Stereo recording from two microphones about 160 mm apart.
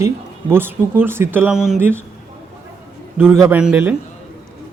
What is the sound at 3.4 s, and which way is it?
Speech, 5° right (ahead or behind).